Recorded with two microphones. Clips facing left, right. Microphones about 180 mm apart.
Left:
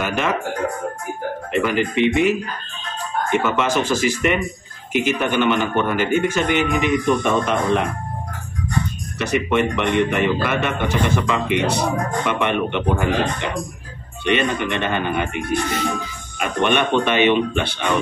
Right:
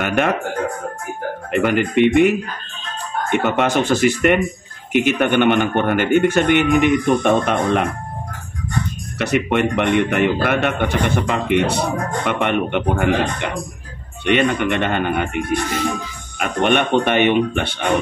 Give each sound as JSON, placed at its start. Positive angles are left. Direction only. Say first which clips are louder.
{"t": 0.0, "sound": "a man's voice", "louder": "right 3 dB", "side_deg": -60}
{"t": 1.5, "sound": "a man's voice", "louder": "right 3 dB", "side_deg": -60}
{"t": 9.2, "sound": "a man's voice", "louder": "right 1 dB", "side_deg": -60}
{"t": 16.3, "sound": "a man's voice", "louder": "right 2 dB", "side_deg": -55}